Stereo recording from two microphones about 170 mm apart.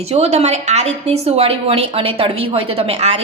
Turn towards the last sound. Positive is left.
turn(degrees=-35)  # may be behind; listen again after turning